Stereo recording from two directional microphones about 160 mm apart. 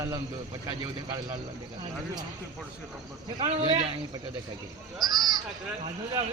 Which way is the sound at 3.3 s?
35° right (ahead or behind).